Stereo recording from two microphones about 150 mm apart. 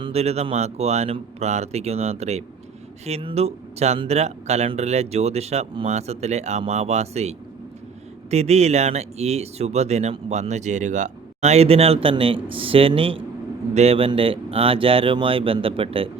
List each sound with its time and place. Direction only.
0.0 s speech: 45° right (ahead or behind)